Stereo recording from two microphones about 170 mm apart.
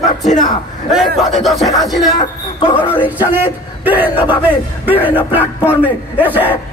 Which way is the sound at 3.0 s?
10° right (ahead or behind).